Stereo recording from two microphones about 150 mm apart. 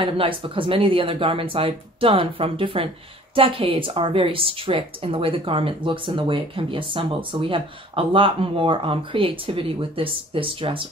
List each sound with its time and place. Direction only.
0.0 s a woman's voice: 35° right (ahead or behind)